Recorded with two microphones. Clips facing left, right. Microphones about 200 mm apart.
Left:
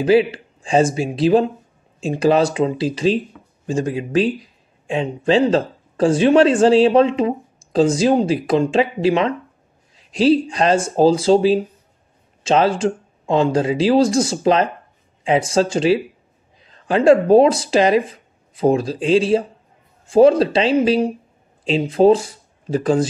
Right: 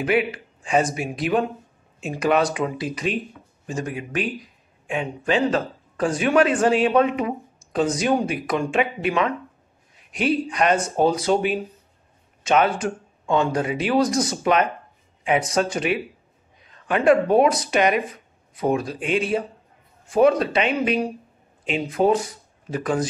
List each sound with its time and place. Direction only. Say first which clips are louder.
0.0 s speech: left 7 dB; 30° left (ahead or behind)